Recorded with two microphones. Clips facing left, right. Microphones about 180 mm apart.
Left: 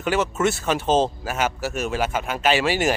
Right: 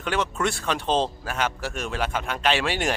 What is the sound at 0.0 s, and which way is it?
Speech, 5° left (ahead or behind).